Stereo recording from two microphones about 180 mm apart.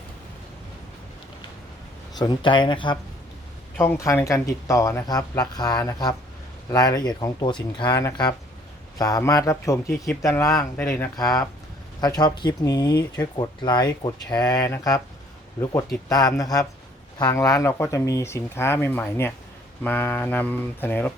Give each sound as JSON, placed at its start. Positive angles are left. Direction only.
{"t": 2.1, "sound": "speech", "side_deg": 25}
{"t": 3.8, "sound": "speech", "side_deg": 15}
{"t": 16.0, "sound": "speech", "side_deg": 20}